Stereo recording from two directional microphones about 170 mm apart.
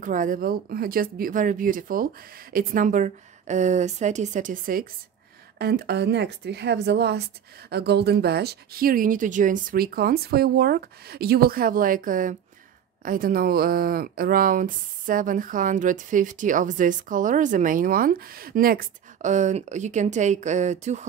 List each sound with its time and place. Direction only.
0.0 s speech: 50° right (ahead or behind)
5.6 s a woman's voice: 70° right (ahead or behind); by 21.1 s 45° right (ahead or behind)